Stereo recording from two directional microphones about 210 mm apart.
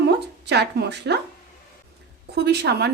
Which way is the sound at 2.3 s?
50° right (ahead or behind).